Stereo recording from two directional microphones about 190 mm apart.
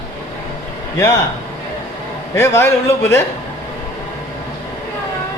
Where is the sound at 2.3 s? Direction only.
15° left (ahead or behind).